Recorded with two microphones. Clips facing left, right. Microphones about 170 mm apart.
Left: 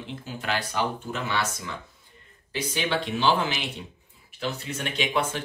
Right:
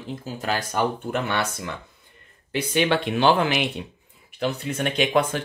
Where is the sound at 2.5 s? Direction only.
60° right (ahead or behind).